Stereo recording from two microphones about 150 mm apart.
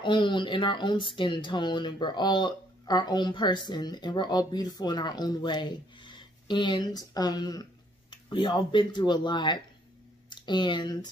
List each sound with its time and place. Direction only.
0.0 s speech: 30° left (ahead or behind)